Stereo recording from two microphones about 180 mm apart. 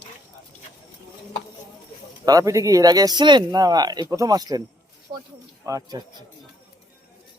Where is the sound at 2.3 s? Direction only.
20° right (ahead or behind).